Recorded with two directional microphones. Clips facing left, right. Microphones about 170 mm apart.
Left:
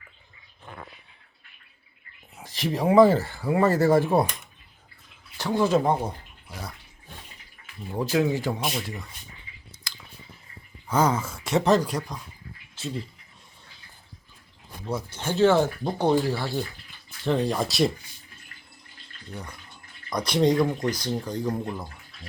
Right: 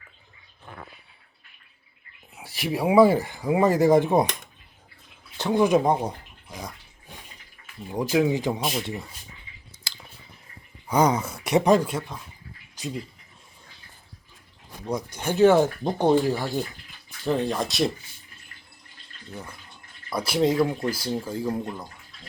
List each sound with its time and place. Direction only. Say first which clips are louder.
2.3 s speech: even; 10° right (ahead or behind)
5.4 s speech: right 2 dB; 20° right (ahead or behind)
7.9 s speech: right 2 dB; 15° right (ahead or behind)
9.9 s chewing: even; 25° right (ahead or behind)
10.8 s a sound: right 2 dB; 15° right (ahead or behind)
11.2 s speech: right 1 dB; centre (ahead or behind)
11.4 s speech: right 2 dB; 15° right (ahead or behind)
14.8 s speech: right 2 dB; 15° right (ahead or behind)
17.2 s speech: even; centre (ahead or behind)
19.3 s speech: even; 5° right (ahead or behind)